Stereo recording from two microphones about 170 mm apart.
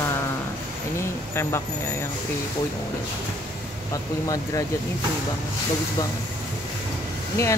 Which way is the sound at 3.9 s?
20° left (ahead or behind).